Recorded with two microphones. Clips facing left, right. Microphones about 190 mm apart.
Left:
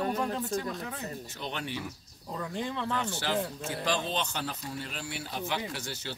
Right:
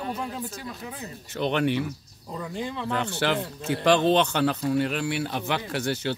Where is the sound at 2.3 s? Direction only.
Centre (ahead or behind).